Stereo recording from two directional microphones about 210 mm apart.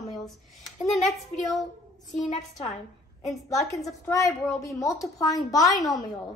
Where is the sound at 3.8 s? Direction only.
15° left (ahead or behind).